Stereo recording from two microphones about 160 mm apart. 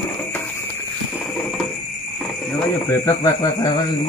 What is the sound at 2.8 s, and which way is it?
Speech, 20° left (ahead or behind).